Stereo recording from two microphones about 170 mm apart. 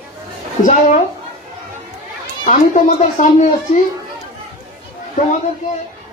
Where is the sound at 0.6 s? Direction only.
45° left (ahead or behind).